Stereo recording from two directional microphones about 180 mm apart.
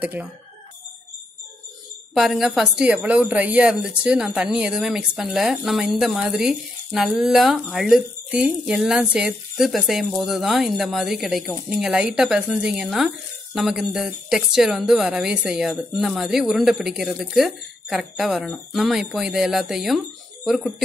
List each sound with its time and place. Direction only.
0.0 s speech: 10° right (ahead or behind)
2.1 s a woman's voice: centre (ahead or behind)